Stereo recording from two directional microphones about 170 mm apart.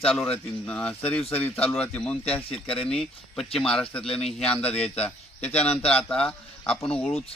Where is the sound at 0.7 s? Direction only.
10° left (ahead or behind).